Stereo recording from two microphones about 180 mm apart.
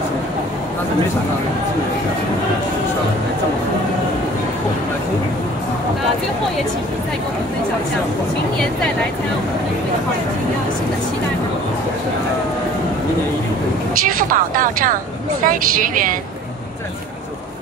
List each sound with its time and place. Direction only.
14.0 s a woman's voice: 50° right (ahead or behind)